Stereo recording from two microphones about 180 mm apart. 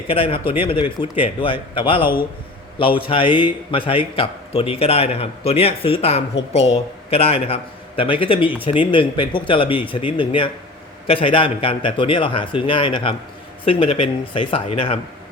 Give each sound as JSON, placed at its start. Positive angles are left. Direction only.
{"t": 0.1, "sound": "a man's voice", "side_deg": 30}